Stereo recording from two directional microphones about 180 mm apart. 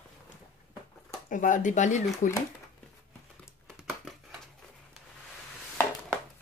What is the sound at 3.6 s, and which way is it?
Crumpling, centre (ahead or behind).